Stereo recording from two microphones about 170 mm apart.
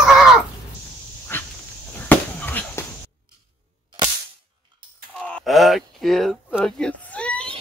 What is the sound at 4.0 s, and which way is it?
Cap gun, 25° right (ahead or behind).